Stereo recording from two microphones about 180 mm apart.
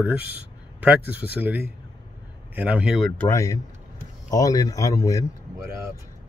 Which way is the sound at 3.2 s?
15° left (ahead or behind).